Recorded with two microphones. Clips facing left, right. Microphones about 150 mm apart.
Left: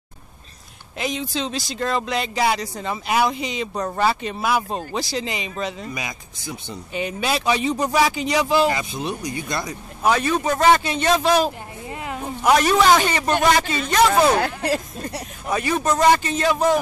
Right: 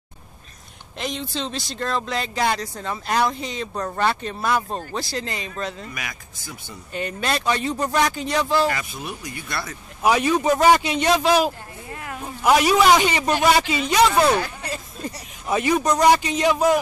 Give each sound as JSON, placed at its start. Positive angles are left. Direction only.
{"t": 0.9, "sound": "speech", "side_deg": 0}
{"t": 5.9, "sound": "speech", "side_deg": 20}
{"t": 6.9, "sound": "speech", "side_deg": 5}
{"t": 8.6, "sound": "speech", "side_deg": 20}
{"t": 10.0, "sound": "speech", "side_deg": -10}
{"t": 11.9, "sound": "a sound", "side_deg": 20}
{"t": 12.4, "sound": "speech", "side_deg": -5}
{"t": 14.4, "sound": "speech", "side_deg": 65}
{"t": 15.5, "sound": "speech", "side_deg": -20}